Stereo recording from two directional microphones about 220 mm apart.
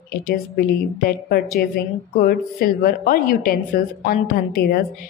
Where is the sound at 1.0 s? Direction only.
45° left (ahead or behind).